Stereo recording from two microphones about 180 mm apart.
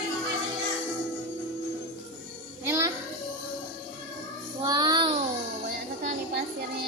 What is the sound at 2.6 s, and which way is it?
Music, 15° right (ahead or behind).